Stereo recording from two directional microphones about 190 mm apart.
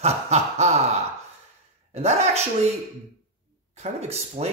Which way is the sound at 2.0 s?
35° right (ahead or behind).